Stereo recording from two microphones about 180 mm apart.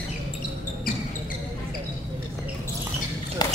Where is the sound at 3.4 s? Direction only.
20° left (ahead or behind).